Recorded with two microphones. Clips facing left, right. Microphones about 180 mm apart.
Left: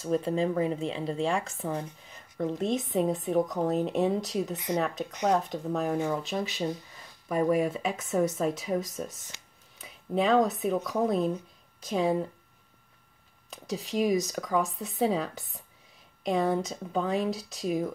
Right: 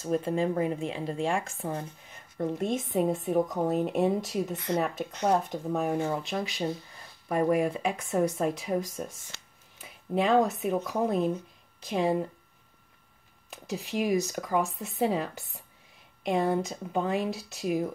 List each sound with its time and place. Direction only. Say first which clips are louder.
0.0 s a woman's voice: left 1 dB; centre (ahead or behind)
0.4 s speech: even; 30° left (ahead or behind)
2.3 s a woman's voice: left 1 dB; 5° right (ahead or behind)
13.5 s a woman's voice: left 1 dB; centre (ahead or behind)